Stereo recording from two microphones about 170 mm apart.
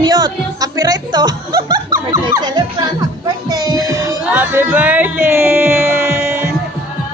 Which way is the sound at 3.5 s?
25° right (ahead or behind).